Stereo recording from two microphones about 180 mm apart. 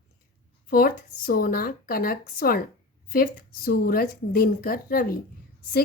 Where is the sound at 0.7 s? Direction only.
55° left (ahead or behind).